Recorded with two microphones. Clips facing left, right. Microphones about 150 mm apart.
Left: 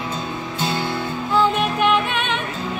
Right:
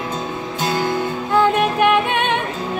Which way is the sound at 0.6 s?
45° right (ahead or behind).